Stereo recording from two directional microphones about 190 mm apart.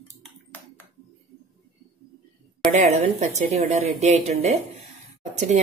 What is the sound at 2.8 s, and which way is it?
Speech, 35° right (ahead or behind).